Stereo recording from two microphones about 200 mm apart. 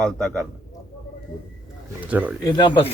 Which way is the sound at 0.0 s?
5° left (ahead or behind).